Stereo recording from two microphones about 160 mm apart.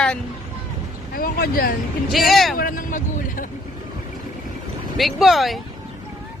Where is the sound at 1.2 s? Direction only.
65° left (ahead or behind).